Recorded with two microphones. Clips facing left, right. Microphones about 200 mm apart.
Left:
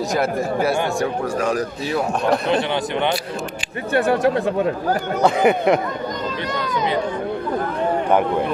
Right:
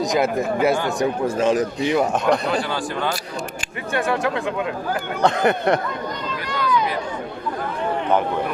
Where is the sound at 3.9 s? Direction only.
35° left (ahead or behind).